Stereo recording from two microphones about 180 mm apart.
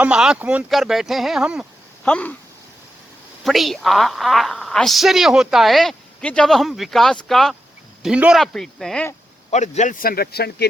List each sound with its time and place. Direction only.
0.0 s a woman's voice: 5° right (ahead or behind)
2.0 s speech: 10° left (ahead or behind)
3.4 s a woman's voice: centre (ahead or behind)
9.5 s speech: 40° left (ahead or behind); by 10.7 s 60° left (ahead or behind)